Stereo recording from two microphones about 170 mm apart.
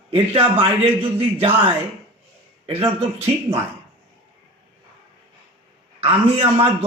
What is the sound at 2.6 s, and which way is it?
Speech, 35° right (ahead or behind).